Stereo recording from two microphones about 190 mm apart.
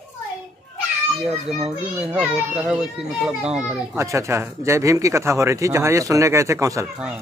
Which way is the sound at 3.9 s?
15° right (ahead or behind).